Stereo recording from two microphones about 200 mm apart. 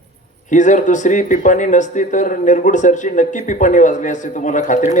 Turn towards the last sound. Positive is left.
turn(degrees=35)  # may be behind; listen again after turning